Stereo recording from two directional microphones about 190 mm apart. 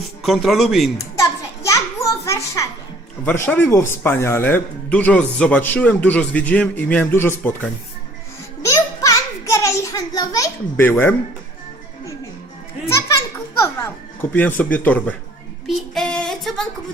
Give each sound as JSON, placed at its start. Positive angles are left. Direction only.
{"t": 0.2, "sound": "speech", "side_deg": 0}
{"t": 0.9, "sound": "children playing", "side_deg": 15}
{"t": 3.2, "sound": "a man's voice", "side_deg": 10}
{"t": 8.6, "sound": "a sound", "side_deg": 15}
{"t": 13.6, "sound": "music", "side_deg": 15}
{"t": 14.6, "sound": "a man's voice", "side_deg": 10}
{"t": 15.6, "sound": "female singing", "side_deg": 0}